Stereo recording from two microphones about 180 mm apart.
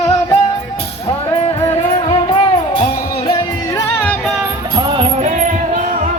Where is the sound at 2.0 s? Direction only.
30° left (ahead or behind).